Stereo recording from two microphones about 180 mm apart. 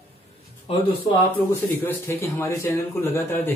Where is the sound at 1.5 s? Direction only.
15° left (ahead or behind).